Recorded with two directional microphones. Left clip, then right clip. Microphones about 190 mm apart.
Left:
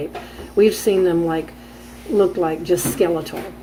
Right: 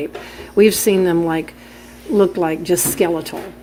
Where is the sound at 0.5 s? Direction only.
35° right (ahead or behind).